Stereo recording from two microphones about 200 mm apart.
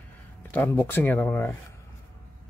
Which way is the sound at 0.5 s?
10° left (ahead or behind).